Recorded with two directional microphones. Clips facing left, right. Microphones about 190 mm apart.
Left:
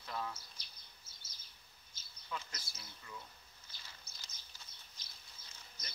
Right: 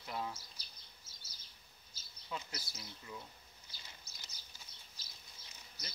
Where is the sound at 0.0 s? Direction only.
20° right (ahead or behind).